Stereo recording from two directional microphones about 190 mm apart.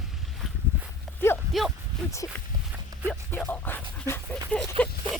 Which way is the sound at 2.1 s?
15° left (ahead or behind).